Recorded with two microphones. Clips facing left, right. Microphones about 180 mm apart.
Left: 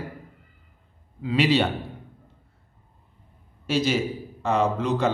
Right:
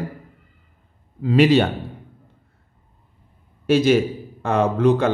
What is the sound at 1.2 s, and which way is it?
Speech, 50° right (ahead or behind).